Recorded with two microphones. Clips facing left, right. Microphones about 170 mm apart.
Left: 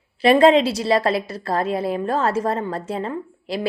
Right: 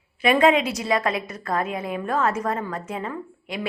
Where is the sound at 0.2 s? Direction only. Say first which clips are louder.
Left 5 dB; 30° left (ahead or behind).